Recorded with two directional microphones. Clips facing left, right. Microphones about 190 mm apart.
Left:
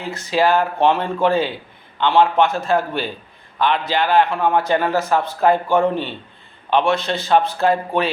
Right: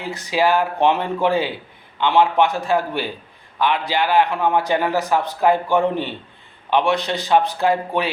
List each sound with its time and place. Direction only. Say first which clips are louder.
0.0 s a man's voice: left 1 dB; 15° right (ahead or behind)